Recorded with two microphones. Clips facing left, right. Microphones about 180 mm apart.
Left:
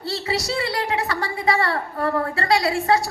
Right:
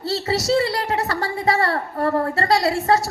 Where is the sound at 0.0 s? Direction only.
40° right (ahead or behind).